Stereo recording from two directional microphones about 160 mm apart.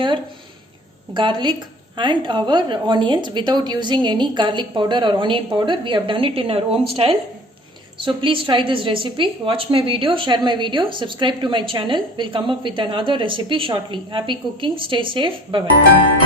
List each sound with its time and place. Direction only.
1.1 s a woman's voice: 30° right (ahead or behind)